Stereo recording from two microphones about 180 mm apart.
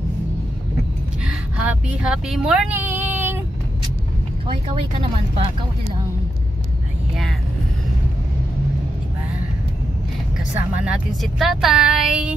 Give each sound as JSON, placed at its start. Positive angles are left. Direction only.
{"t": 1.2, "sound": "speech", "side_deg": -5}
{"t": 4.5, "sound": "speech", "side_deg": -30}
{"t": 10.8, "sound": "speech", "side_deg": -5}